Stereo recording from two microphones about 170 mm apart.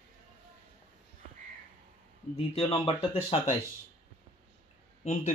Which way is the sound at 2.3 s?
35° left (ahead or behind).